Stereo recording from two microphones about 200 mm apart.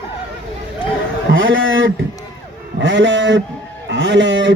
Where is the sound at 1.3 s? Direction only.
75° right (ahead or behind).